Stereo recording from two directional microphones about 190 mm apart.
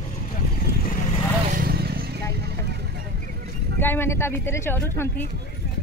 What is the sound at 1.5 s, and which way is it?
Vehicle, 55° right (ahead or behind).